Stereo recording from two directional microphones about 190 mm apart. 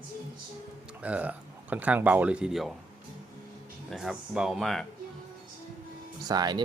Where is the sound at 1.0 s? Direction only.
5° right (ahead or behind).